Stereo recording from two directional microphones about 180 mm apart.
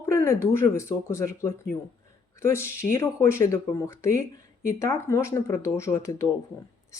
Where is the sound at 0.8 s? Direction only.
15° left (ahead or behind).